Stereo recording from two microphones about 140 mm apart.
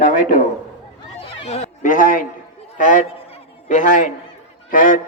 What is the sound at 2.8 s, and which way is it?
Speech, 65° left (ahead or behind).